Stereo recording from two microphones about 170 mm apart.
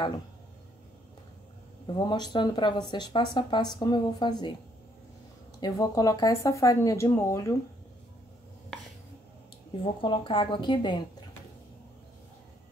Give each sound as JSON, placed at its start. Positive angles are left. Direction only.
{"t": 2.0, "sound": "speech", "side_deg": 25}
{"t": 5.6, "sound": "speech", "side_deg": 20}
{"t": 9.7, "sound": "speech", "side_deg": 30}